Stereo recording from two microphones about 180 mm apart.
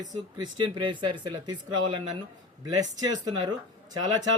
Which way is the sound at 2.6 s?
20° right (ahead or behind).